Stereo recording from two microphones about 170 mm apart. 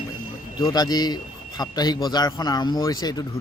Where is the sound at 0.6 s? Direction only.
25° left (ahead or behind).